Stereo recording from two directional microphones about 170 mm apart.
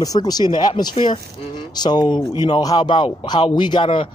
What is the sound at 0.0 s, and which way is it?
Speech, 25° left (ahead or behind).